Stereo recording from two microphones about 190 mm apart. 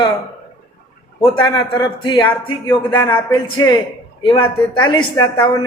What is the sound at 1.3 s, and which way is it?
Speech, 25° left (ahead or behind).